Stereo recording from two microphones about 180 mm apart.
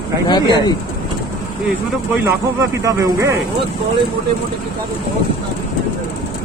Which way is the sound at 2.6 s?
20° right (ahead or behind).